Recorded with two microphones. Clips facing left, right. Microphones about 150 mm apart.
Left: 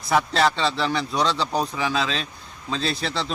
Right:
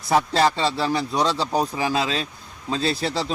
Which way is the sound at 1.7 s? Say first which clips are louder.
Right 2 dB; 40° right (ahead or behind).